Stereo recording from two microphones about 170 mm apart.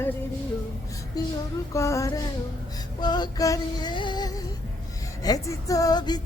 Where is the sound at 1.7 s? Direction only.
15° left (ahead or behind).